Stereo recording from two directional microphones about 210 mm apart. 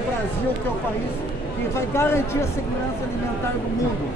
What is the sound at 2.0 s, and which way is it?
Speech, 10° left (ahead or behind).